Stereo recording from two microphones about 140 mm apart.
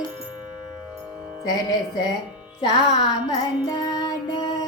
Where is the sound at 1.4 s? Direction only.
25° left (ahead or behind).